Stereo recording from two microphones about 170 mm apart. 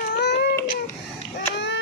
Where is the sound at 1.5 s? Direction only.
90° left.